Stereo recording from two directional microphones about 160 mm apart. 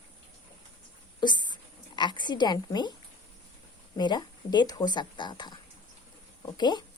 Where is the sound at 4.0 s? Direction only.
25° left (ahead or behind).